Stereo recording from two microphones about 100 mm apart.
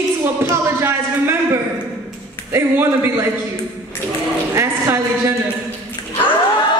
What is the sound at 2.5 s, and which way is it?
Speech, 20° right (ahead or behind).